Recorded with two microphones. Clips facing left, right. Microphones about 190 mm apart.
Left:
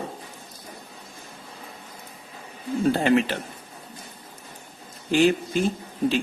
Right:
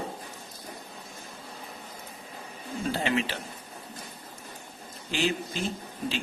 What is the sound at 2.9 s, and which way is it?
Speech, 50° left (ahead or behind).